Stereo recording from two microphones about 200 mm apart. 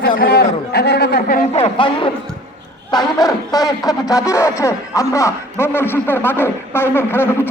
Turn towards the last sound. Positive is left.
turn(degrees=10)  # may be behind; listen again after turning